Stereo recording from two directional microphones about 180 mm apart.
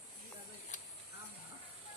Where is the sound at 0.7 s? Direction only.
45° left (ahead or behind).